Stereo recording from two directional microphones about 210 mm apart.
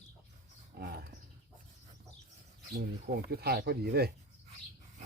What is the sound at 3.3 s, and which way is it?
Speech, 50° right (ahead or behind).